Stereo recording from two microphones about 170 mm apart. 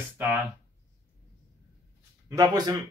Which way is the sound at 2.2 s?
20° right (ahead or behind).